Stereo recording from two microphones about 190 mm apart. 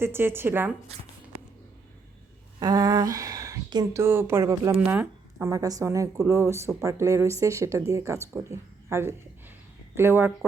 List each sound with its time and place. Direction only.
0.0 s speech: 10° right (ahead or behind)
2.6 s speech: 20° right (ahead or behind)